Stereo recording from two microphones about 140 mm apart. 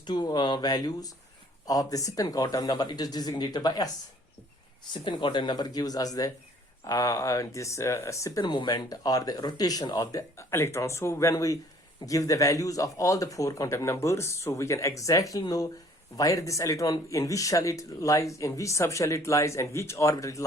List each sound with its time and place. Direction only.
0.0 s speech: 30° left (ahead or behind)
5.0 s speech: 35° left (ahead or behind)